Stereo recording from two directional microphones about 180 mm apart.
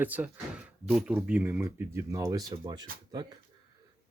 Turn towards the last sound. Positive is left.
turn(degrees=-25)  # may be behind; listen again after turning